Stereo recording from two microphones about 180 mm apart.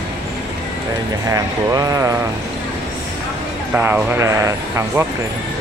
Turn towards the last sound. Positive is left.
turn(degrees=-15)  # may be behind; listen again after turning